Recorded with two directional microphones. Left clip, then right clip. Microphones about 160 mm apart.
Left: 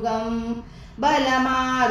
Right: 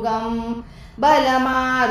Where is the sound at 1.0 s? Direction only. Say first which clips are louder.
Right 4 dB; 30° right (ahead or behind).